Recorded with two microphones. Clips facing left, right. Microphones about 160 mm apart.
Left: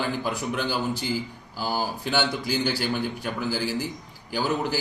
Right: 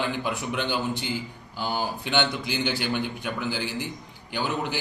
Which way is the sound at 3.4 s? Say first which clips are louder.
Left 5 dB; 40° left (ahead or behind).